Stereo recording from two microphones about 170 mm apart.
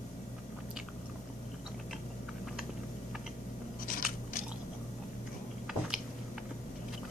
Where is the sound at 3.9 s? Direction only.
55° left (ahead or behind).